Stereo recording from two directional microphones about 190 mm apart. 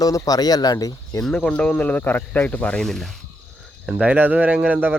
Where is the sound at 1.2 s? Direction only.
5° left (ahead or behind).